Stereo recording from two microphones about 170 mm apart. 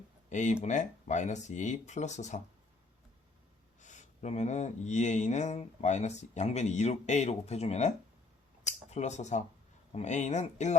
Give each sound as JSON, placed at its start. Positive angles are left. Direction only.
{"t": 0.3, "sound": "speech", "side_deg": 45}
{"t": 3.8, "sound": "speech", "side_deg": 45}
{"t": 8.6, "sound": "a sound", "side_deg": 40}
{"t": 9.9, "sound": "speech", "side_deg": 45}